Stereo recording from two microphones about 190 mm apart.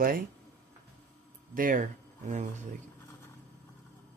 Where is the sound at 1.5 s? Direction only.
45° right (ahead or behind).